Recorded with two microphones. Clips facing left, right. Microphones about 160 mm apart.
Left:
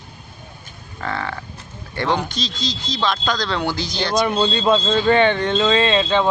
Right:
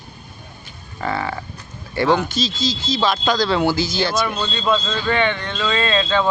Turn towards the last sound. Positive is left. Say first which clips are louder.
# left 2 dB
turn(degrees=20)  # may be behind; listen again after turning